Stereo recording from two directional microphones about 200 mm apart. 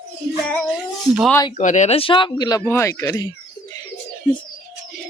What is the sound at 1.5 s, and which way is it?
Speech, 35° left (ahead or behind).